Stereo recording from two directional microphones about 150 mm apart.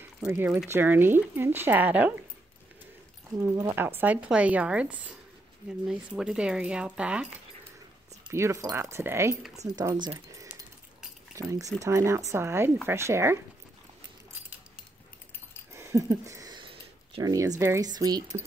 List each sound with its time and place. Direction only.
0.3 s speech: 15° right (ahead or behind)
3.3 s speech: 15° right (ahead or behind)
8.3 s speech: 20° right (ahead or behind)
10.1 s keys jangling: 20° right (ahead or behind)
11.3 s speech: 20° right (ahead or behind)
15.7 s speech: 20° right (ahead or behind)